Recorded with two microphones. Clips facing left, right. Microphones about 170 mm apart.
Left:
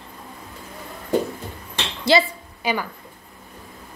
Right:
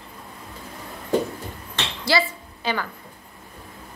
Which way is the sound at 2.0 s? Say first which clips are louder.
Left 5 dB; 15° left (ahead or behind).